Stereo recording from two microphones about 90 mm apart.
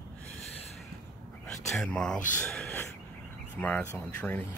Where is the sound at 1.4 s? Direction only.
10° left (ahead or behind).